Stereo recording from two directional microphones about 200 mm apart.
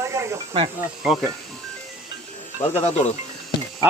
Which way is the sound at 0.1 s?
15° right (ahead or behind).